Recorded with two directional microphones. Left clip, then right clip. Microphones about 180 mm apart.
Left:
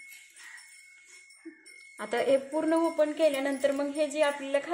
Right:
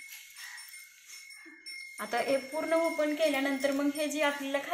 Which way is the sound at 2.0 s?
65° left (ahead or behind).